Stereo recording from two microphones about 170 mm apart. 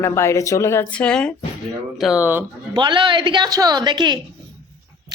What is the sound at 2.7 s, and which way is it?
A woman's voice, 30° right (ahead or behind).